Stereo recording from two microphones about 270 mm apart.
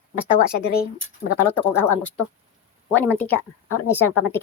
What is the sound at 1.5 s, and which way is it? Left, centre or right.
Speech, centre.